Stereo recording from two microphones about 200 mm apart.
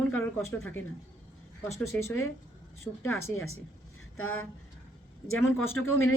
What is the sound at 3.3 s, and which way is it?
Speech, 90° left.